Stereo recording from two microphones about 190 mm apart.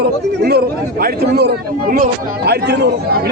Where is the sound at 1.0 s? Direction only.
60° right (ahead or behind).